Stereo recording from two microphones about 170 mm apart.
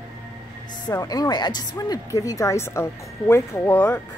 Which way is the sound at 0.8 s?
25° left (ahead or behind).